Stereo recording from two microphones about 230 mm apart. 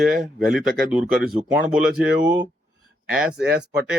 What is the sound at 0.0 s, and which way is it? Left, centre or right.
Speech, centre.